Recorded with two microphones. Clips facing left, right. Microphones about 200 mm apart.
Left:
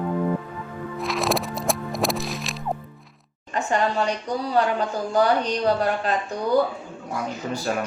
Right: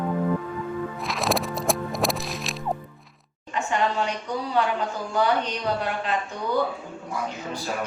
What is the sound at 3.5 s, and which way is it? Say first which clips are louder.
A woman's voice: left 2 dB; 40° left (ahead or behind).